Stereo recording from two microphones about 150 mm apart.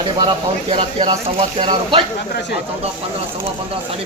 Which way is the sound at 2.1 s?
90° left.